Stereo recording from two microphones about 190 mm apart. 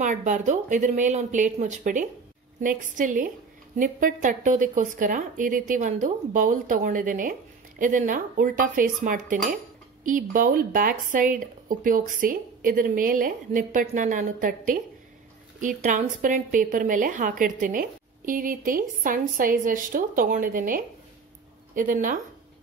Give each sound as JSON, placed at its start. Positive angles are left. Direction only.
{"t": 0.0, "sound": "a woman's voice", "side_deg": -40}